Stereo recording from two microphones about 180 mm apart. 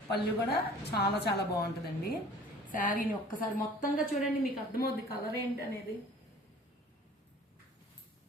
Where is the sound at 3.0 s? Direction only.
50° left (ahead or behind).